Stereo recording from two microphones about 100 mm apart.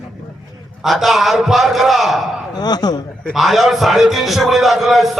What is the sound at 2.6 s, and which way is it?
Speech, 45° left (ahead or behind).